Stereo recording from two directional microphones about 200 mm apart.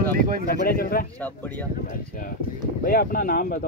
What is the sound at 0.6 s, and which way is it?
Speech, 50° left (ahead or behind).